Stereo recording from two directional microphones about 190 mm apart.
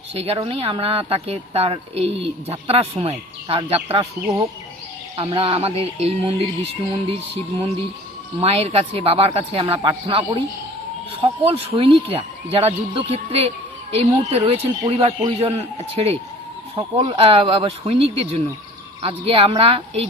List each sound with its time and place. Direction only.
0.1 s speech: 30° right (ahead or behind)
5.1 s speech: 30° right (ahead or behind)